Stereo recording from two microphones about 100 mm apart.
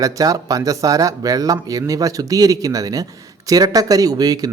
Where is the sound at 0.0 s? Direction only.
35° right (ahead or behind).